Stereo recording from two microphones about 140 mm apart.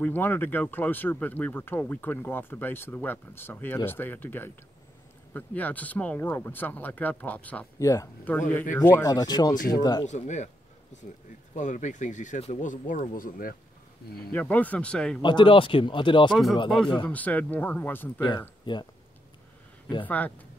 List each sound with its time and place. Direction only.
0.0 s speech: 15° left (ahead or behind)
7.8 s speech: 25° left (ahead or behind)
8.3 s speech: 15° left (ahead or behind)
9.1 s speech: 30° left (ahead or behind)
10.0 s speech: 55° left (ahead or behind)
11.5 s speech: 60° left (ahead or behind); by 13.6 s 85° left
14.3 s speech: 10° left (ahead or behind)
15.2 s speech: 35° left (ahead or behind)
17.1 s speech: 10° left (ahead or behind)
20.1 s speech: 10° left (ahead or behind)